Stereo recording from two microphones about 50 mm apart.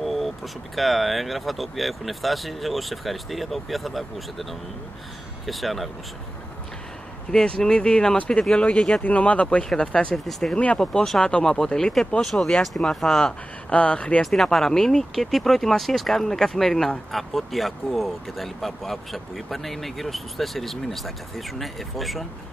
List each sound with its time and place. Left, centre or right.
0.0 s vehicle: centre
0.7 s speech: centre
5.5 s speech: centre
7.2 s speech: centre
9.0 s speech: left; by 10.5 s centre
10.5 s speech: left; by 13.3 s centre
13.7 s speech: left
14.2 s speech: centre